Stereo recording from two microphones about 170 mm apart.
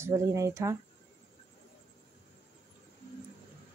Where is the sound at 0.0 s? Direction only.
15° right (ahead or behind).